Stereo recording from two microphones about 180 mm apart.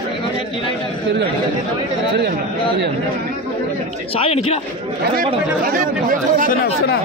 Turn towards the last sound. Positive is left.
turn(degrees=-45)  # may be behind; listen again after turning